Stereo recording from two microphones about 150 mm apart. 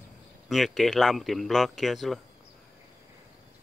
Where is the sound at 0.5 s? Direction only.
Centre (ahead or behind).